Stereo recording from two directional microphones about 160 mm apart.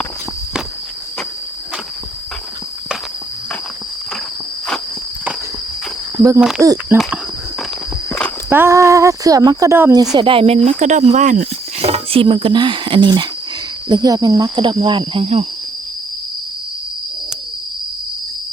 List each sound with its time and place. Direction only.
6.1 s speech: 20° right (ahead or behind)
8.4 s speech: 15° right (ahead or behind)
10.2 s speech: 35° right (ahead or behind)
10.7 s speech: 50° right (ahead or behind)